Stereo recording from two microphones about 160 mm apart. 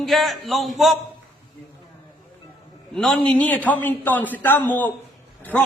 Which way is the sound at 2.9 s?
5° left (ahead or behind).